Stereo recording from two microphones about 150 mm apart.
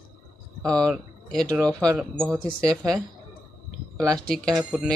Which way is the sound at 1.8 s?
5° left (ahead or behind).